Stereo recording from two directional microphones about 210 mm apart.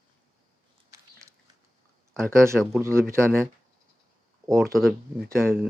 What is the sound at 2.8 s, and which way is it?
Speech, 15° right (ahead or behind).